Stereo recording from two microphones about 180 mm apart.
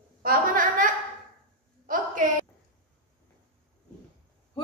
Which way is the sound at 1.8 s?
50° right (ahead or behind).